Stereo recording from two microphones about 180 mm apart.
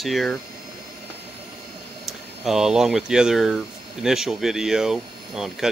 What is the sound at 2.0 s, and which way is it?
Speech, centre (ahead or behind).